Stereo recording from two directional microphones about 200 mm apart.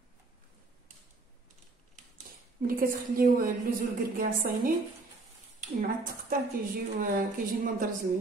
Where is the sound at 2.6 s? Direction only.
45° right (ahead or behind).